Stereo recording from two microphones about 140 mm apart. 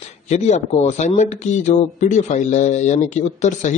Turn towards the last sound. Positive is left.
turn(degrees=55)  # may be behind; listen again after turning